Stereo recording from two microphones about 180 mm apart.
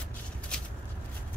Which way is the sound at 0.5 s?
5° left (ahead or behind).